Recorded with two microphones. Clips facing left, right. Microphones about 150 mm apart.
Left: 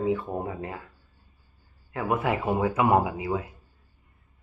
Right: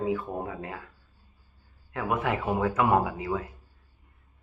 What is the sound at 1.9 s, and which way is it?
Speech, 5° left (ahead or behind).